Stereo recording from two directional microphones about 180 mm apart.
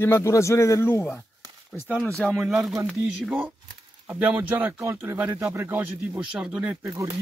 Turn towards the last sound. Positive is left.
turn(degrees=-15)  # may be behind; listen again after turning